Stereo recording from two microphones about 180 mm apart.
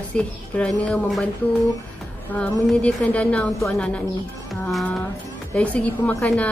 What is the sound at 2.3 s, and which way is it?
A woman's voice, 5° left (ahead or behind).